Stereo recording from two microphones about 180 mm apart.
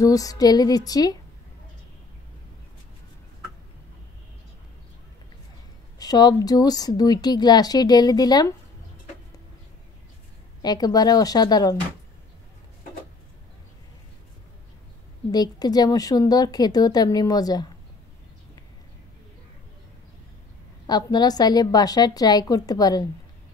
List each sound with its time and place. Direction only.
0.0 s speech: 20° left (ahead or behind)
5.9 s speech: 20° left (ahead or behind)
10.6 s speech: 20° left (ahead or behind)
15.3 s speech: 20° left (ahead or behind)
20.8 s speech: 20° left (ahead or behind)